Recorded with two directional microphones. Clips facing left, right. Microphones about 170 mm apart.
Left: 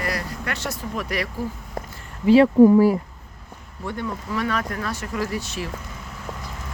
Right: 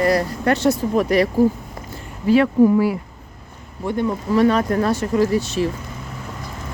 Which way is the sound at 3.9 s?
20° right (ahead or behind).